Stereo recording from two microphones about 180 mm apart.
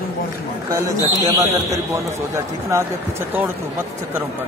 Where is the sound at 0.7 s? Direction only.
20° right (ahead or behind).